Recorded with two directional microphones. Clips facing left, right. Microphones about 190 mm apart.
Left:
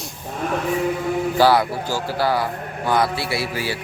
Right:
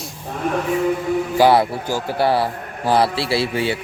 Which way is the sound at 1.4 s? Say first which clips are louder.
Right 2 dB; 25° right (ahead or behind).